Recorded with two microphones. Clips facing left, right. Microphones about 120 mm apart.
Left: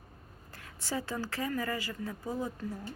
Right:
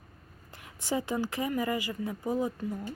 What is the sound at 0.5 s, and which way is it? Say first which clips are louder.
Speech: right 5 dB; 15° right (ahead or behind).